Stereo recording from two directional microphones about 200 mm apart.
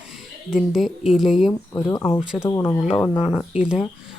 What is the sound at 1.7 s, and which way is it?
Speech, 15° left (ahead or behind).